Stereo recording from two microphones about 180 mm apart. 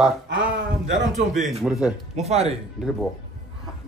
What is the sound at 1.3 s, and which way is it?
Speech, 40° right (ahead or behind).